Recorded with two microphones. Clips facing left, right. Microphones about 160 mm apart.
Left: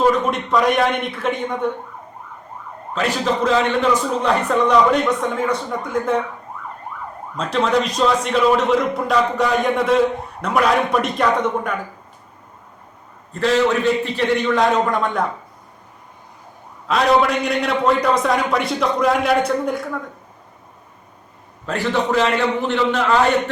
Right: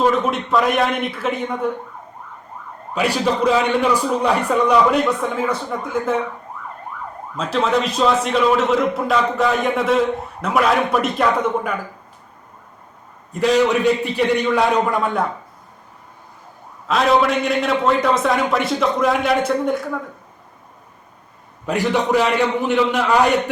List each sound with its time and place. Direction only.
0.0 s speech: centre (ahead or behind)
2.9 s a man's voice: 10° right (ahead or behind)
7.3 s speech: 5° right (ahead or behind)
13.3 s a man's voice: 15° right (ahead or behind)
16.9 s speech: centre (ahead or behind)
22.1 s a man's voice: 15° right (ahead or behind)